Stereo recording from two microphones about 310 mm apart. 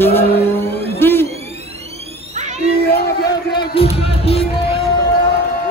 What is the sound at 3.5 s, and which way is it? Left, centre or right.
Music, centre.